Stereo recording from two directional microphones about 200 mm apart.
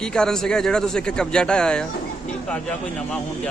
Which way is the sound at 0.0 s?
5° left (ahead or behind).